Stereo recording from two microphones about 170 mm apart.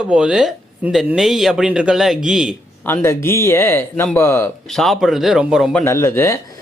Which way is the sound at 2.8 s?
10° left (ahead or behind).